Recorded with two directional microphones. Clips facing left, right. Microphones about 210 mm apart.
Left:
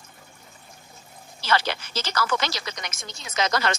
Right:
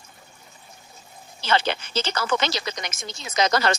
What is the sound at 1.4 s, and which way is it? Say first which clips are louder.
Speech: right 2 dB; 25° right (ahead or behind).